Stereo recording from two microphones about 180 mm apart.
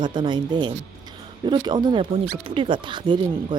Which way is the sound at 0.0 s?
25° right (ahead or behind).